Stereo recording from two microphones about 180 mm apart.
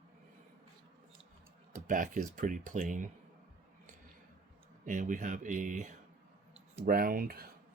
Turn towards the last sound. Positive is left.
turn(degrees=-55)  # may be behind; listen again after turning